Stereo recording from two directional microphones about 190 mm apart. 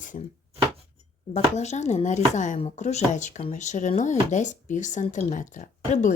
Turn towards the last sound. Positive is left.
turn(degrees=40)  # may be behind; listen again after turning